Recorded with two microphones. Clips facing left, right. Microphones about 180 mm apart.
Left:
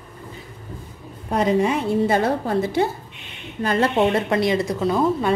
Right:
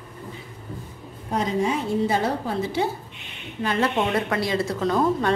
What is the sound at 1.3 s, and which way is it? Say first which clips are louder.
A woman's voice: left 4 dB; 65° left (ahead or behind).